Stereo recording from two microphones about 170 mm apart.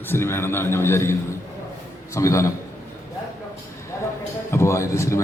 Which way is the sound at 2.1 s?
15° left (ahead or behind).